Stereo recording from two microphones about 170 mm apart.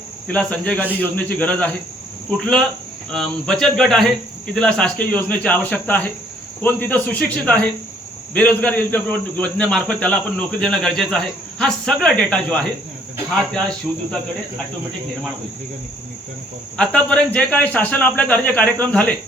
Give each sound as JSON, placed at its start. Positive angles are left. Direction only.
{"t": 0.3, "sound": "a man's voice", "side_deg": 5}
{"t": 16.7, "sound": "speech", "side_deg": 5}